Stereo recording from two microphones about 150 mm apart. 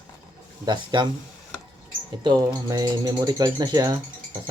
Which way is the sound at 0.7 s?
30° right (ahead or behind).